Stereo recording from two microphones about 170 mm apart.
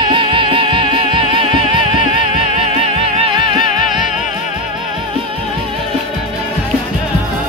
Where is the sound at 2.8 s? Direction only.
30° right (ahead or behind).